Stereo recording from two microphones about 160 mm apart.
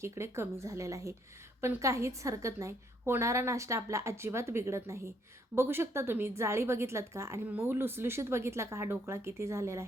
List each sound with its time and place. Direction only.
0.0 s a woman's voice: 15° right (ahead or behind)